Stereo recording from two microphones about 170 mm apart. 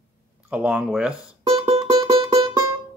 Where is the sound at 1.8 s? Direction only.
25° right (ahead or behind).